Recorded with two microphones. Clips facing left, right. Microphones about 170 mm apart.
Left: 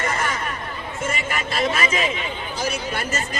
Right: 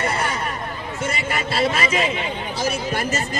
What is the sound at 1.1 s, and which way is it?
A man's voice, 35° right (ahead or behind).